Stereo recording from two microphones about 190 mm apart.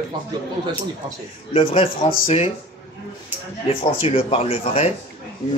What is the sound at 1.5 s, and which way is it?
Speech, 30° left (ahead or behind).